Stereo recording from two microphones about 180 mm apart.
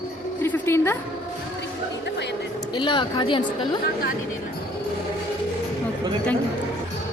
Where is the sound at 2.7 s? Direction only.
25° left (ahead or behind).